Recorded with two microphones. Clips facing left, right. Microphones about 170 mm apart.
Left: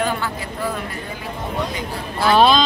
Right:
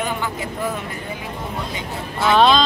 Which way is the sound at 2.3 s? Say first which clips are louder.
Even; 5° left (ahead or behind).